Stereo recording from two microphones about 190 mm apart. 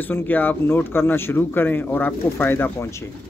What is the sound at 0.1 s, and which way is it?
Speech, 10° left (ahead or behind).